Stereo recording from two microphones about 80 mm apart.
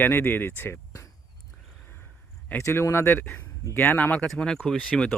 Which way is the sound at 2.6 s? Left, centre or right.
Left.